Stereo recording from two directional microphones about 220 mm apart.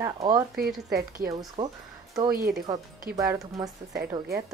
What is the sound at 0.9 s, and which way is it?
Speech, 45° right (ahead or behind).